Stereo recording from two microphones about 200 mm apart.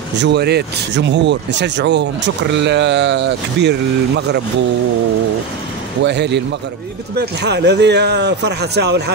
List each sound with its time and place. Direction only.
0.2 s speech: 55° right (ahead or behind)
6.0 s speech: 60° right (ahead or behind)